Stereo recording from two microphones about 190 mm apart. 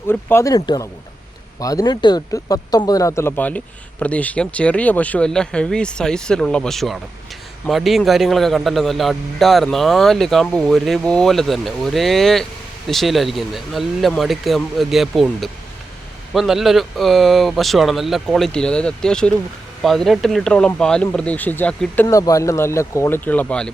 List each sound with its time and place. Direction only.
0.1 s a man's voice: 10° left (ahead or behind)